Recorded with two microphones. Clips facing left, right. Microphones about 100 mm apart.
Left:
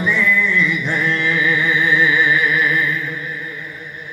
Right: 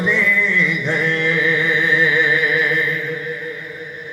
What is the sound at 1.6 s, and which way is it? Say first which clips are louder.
Music: left 1 dB; 55° right (ahead or behind).